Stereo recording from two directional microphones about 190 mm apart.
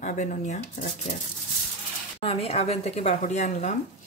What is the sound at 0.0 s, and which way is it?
Speech, 40° left (ahead or behind).